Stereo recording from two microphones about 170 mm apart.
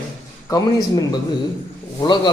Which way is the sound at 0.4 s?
20° left (ahead or behind).